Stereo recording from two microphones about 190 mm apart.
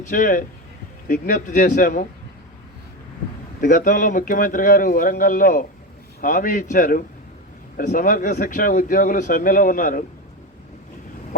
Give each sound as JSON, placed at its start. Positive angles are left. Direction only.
{"t": 0.1, "sound": "speech", "side_deg": 45}
{"t": 3.6, "sound": "speech", "side_deg": 45}